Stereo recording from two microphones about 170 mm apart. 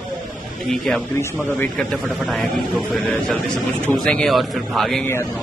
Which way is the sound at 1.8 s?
Centre (ahead or behind).